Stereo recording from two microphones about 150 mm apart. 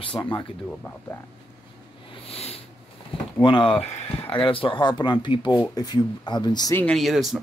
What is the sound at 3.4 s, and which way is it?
Speech, 35° left (ahead or behind).